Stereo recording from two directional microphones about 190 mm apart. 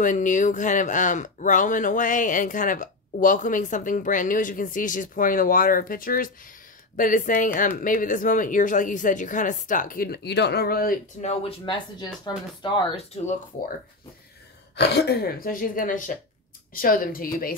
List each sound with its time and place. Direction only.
0.0 s speech: 40° left (ahead or behind)
14.8 s speech: 60° left (ahead or behind)